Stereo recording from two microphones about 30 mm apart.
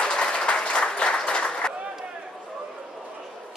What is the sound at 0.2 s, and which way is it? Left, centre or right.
Applause, left.